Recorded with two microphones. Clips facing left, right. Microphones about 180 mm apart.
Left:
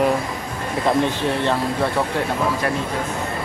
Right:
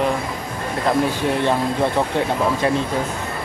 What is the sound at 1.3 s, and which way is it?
Speech, 15° right (ahead or behind).